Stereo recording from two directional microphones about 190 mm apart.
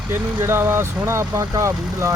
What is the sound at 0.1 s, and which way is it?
Speech, 10° right (ahead or behind).